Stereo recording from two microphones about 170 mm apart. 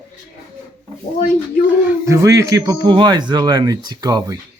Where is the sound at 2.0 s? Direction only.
15° right (ahead or behind).